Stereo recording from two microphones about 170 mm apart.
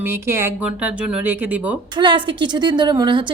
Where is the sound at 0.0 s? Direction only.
15° right (ahead or behind).